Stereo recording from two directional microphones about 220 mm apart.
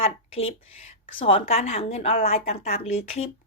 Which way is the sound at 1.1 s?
25° left (ahead or behind).